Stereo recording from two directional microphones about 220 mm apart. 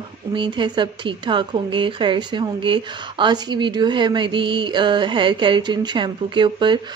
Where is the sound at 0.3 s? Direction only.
20° right (ahead or behind).